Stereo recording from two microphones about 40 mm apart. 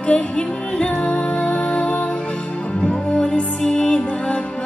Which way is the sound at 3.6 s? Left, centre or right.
Left.